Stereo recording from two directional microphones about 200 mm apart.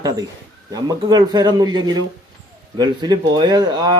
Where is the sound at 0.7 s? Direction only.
20° right (ahead or behind).